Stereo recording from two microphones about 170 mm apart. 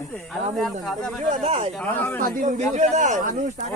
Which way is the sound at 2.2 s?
50° right (ahead or behind).